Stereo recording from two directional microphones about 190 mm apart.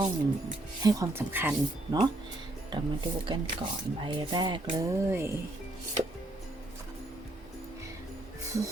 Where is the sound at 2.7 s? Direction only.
25° right (ahead or behind).